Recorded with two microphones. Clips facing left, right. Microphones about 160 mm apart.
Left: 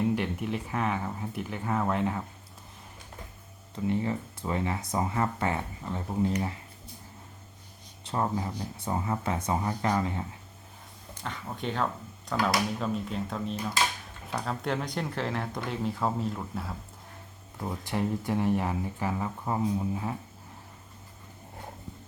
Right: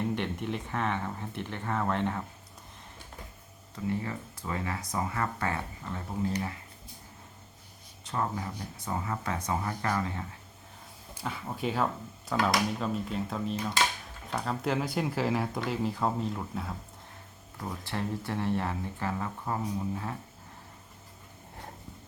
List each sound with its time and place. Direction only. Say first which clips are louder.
0.0 s speech: left 3 dB; 5° left (ahead or behind)
3.8 s speech: left 4 dB; 25° left (ahead or behind)
8.0 s speech: left 3 dB; 25° left (ahead or behind)
11.1 s speech: right 1 dB; 5° right (ahead or behind)
17.6 s speech: left 4 dB; 15° left (ahead or behind)